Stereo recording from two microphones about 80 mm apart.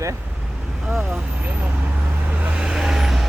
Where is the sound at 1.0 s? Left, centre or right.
Centre.